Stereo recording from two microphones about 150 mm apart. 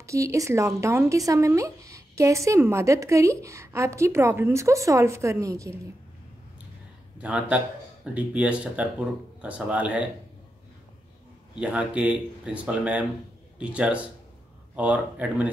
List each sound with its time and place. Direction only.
0.0 s speech: 20° right (ahead or behind)
7.2 s speech: 5° right (ahead or behind)
11.6 s speech: 10° right (ahead or behind)